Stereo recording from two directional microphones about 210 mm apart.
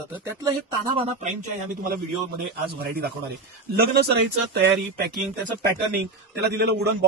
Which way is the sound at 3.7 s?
50° right (ahead or behind).